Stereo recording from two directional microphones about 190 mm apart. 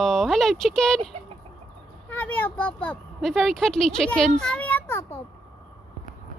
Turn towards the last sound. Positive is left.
turn(degrees=10)  # may be behind; listen again after turning